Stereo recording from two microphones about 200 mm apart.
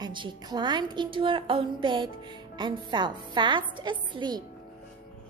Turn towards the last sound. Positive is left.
turn(degrees=-20)  # may be behind; listen again after turning